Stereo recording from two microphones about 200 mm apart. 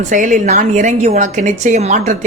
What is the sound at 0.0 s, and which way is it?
A woman's voice, 40° right (ahead or behind).